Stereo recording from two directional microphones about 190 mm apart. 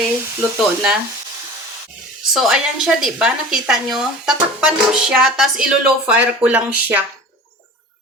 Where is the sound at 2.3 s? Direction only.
5° right (ahead or behind).